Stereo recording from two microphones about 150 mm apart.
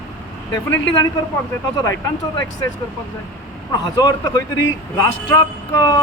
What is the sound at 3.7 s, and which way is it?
A man's voice, 25° left (ahead or behind).